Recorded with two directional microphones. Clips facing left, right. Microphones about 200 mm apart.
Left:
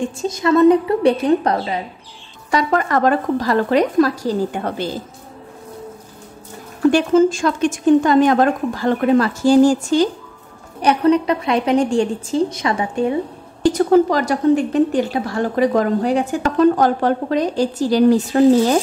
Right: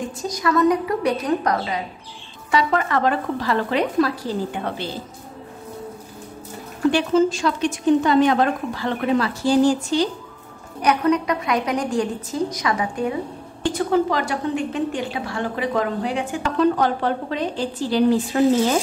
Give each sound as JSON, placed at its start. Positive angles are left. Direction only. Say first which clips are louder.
{"t": 0.2, "sound": "a woman's voice", "louder": "left 6 dB", "side_deg": 25}
{"t": 2.5, "sound": "speech", "louder": "left 3 dB", "side_deg": 45}
{"t": 6.9, "sound": "speech", "louder": "left 4 dB", "side_deg": 45}
{"t": 10.8, "sound": "a woman's voice", "louder": "left 4 dB", "side_deg": 30}
{"t": 13.6, "sound": "a woman's voice", "louder": "left 7 dB", "side_deg": 40}